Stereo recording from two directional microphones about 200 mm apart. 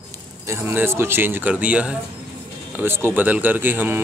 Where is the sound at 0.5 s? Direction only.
10° right (ahead or behind).